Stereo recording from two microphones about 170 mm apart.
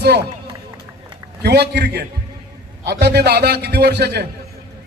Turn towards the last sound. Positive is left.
turn(degrees=-75)  # may be behind; listen again after turning